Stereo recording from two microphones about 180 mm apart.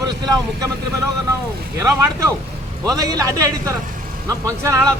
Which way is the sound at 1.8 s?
15° right (ahead or behind).